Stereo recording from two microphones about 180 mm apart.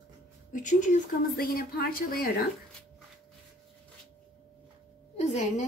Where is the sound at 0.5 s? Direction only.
45° left (ahead or behind).